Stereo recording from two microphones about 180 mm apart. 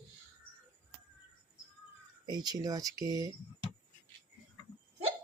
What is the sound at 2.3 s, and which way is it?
Speech, 20° right (ahead or behind).